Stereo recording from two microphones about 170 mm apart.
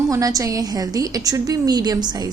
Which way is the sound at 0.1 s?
20° right (ahead or behind).